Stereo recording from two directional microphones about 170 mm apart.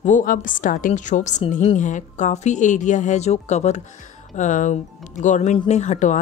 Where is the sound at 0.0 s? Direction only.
50° left (ahead or behind).